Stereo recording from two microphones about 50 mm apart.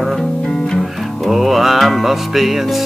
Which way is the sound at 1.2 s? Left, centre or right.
Centre.